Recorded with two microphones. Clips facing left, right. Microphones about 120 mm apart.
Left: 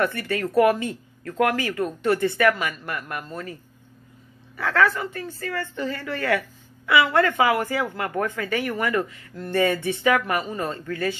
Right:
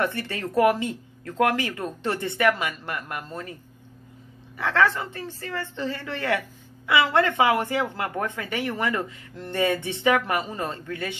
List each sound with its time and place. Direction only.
0.0 s speech: 25° right (ahead or behind)
4.6 s speech: 25° right (ahead or behind)